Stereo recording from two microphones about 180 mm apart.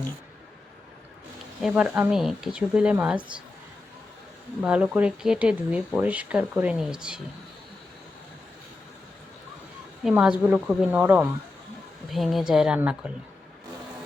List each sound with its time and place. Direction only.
1.6 s speech: 5° right (ahead or behind)
4.6 s speech: 5° right (ahead or behind)
10.0 s speech: 5° right (ahead or behind)